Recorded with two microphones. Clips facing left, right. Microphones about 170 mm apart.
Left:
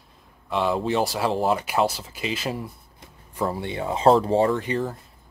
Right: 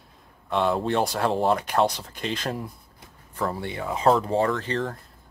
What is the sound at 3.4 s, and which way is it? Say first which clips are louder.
Speech: left 2 dB; 15° left (ahead or behind).